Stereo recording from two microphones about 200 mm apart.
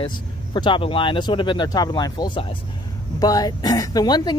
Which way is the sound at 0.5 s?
25° left (ahead or behind).